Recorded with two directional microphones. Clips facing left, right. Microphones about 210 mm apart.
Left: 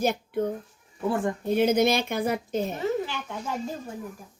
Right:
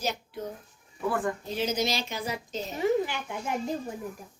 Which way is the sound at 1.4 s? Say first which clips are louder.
Left 8 dB; 55° left (ahead or behind).